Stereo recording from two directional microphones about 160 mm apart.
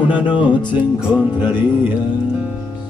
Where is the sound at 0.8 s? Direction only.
10° right (ahead or behind).